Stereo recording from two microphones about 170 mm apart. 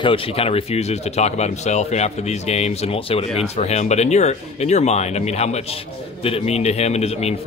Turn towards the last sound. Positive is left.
turn(degrees=40)  # may be behind; listen again after turning